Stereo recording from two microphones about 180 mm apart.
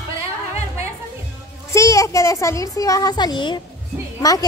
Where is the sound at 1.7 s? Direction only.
20° left (ahead or behind).